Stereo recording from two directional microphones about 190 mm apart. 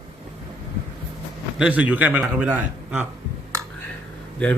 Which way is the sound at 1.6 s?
5° right (ahead or behind).